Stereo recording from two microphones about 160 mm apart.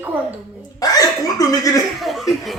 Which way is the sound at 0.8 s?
20° left (ahead or behind).